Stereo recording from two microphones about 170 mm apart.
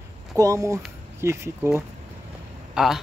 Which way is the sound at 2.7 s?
Centre (ahead or behind).